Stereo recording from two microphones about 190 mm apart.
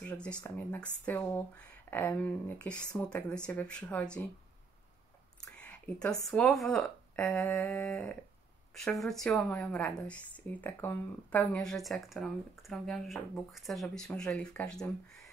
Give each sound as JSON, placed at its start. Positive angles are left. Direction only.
{"t": 0.0, "sound": "speech", "side_deg": 5}
{"t": 5.4, "sound": "a sound", "side_deg": 5}
{"t": 6.2, "sound": "a woman's voice", "side_deg": 5}